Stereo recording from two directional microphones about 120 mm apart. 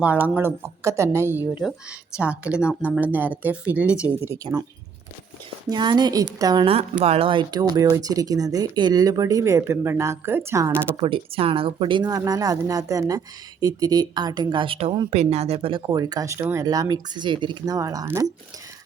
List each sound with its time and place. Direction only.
0.0 s speech: 15° right (ahead or behind)
5.6 s speech: 40° right (ahead or behind)
7.0 s speech: 55° right (ahead or behind); by 10.7 s 20° right (ahead or behind)
11.0 s speech: 50° right (ahead or behind)
15.1 s speech: 65° right (ahead or behind)
15.9 s speech: 35° right (ahead or behind)
17.7 s speech: 30° right (ahead or behind)